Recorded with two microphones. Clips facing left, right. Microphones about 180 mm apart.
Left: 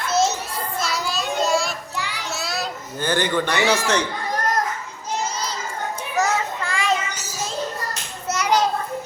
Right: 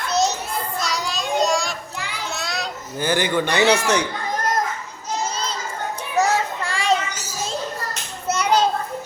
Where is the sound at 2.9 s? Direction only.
10° right (ahead or behind).